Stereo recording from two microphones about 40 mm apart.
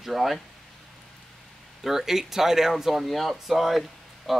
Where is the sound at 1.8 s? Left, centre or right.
Centre.